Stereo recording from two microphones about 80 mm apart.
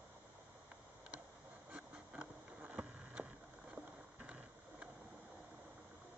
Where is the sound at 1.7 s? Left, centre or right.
Centre.